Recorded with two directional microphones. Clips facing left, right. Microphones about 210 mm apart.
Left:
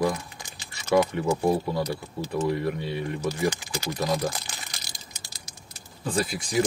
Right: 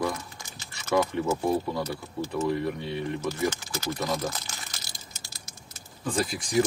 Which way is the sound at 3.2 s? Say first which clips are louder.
Left 2 dB; 15° left (ahead or behind).